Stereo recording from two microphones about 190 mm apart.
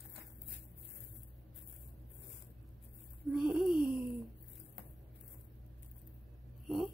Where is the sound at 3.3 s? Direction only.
5° right (ahead or behind).